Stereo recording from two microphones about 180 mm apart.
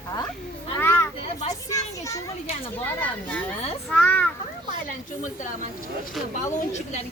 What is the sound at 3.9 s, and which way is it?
Speech, 10° left (ahead or behind).